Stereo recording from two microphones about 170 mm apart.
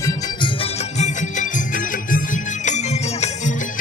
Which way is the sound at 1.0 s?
50° left (ahead or behind).